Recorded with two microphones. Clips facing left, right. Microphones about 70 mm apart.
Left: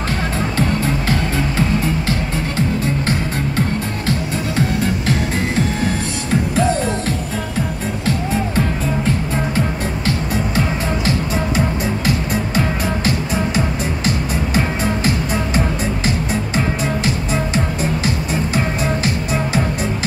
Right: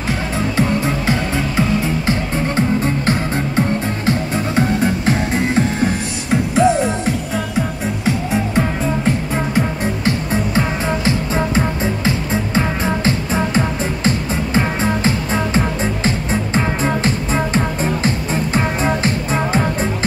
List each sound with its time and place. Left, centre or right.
2.0 s music: right
6.5 s music: centre
10.0 s music: right